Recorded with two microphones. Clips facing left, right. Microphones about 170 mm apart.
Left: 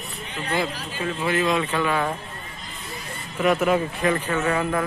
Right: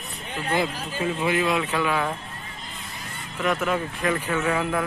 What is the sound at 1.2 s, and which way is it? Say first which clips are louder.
Speech: left 2 dB; 10° right (ahead or behind).